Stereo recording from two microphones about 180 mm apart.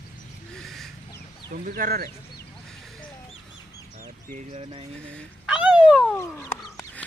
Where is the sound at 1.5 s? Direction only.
50° right (ahead or behind).